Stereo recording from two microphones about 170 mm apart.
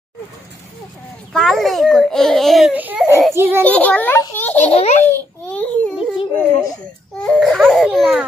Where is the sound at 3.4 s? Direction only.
15° right (ahead or behind).